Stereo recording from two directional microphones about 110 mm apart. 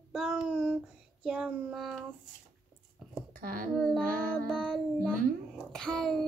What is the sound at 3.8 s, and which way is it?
Child singing, 5° left (ahead or behind).